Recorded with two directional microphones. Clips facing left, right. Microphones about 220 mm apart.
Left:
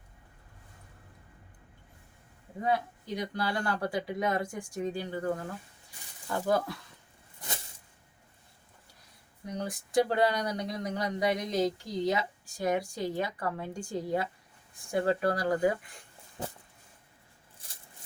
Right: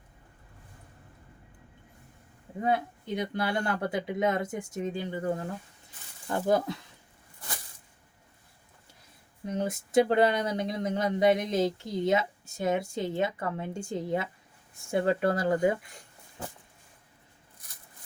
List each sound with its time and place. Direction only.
2.6 s speech: 25° right (ahead or behind)
9.5 s speech: 25° right (ahead or behind)
17.6 s a sound: 30° left (ahead or behind)